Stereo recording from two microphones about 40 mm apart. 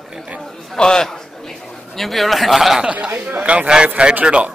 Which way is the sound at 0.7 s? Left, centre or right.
Centre.